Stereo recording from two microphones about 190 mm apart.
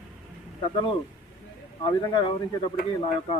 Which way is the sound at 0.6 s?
25° left (ahead or behind).